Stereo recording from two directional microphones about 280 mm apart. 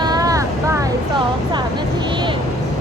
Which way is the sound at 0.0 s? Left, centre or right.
Centre.